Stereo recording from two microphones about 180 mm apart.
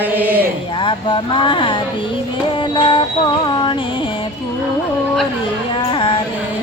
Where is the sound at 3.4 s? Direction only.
25° left (ahead or behind).